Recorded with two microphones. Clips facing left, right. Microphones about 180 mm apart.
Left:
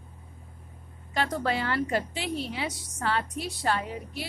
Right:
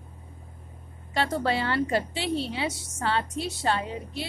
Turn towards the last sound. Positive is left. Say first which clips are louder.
# right 1 dB
turn(degrees=-25)  # may be behind; listen again after turning